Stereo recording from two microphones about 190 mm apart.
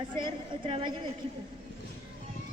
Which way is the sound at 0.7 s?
30° right (ahead or behind).